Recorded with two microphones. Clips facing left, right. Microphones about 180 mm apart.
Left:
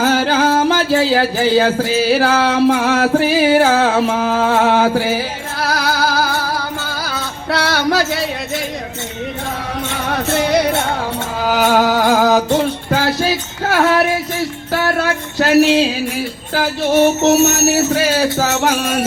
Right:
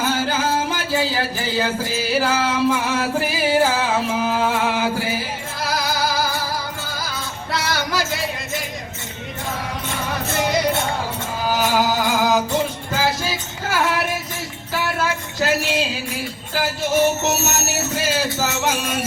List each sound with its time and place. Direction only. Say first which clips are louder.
0.0 s music: left 7 dB; 75° left (ahead or behind)
10.1 s music: left 6 dB; 70° left (ahead or behind)